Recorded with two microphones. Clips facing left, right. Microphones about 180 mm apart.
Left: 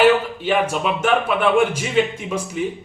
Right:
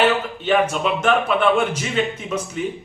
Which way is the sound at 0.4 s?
5° left (ahead or behind).